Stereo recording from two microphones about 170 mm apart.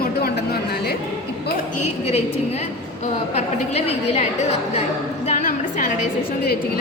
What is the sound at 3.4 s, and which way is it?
Speech, 40° left (ahead or behind).